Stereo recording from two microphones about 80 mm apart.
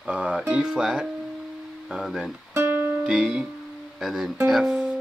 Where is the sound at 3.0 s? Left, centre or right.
Centre.